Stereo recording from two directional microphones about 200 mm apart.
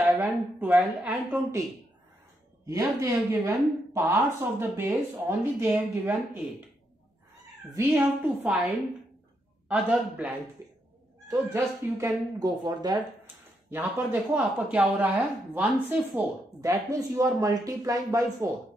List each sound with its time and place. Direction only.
0.1 s a woman's voice: 5° right (ahead or behind)
2.6 s a woman's voice: 15° right (ahead or behind)
7.7 s a woman's voice: 10° right (ahead or behind)